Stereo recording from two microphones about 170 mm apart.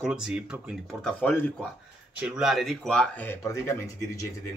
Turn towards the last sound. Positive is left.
turn(degrees=20)  # may be behind; listen again after turning